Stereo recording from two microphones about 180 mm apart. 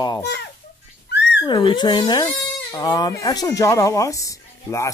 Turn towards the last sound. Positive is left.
turn(degrees=15)  # may be behind; listen again after turning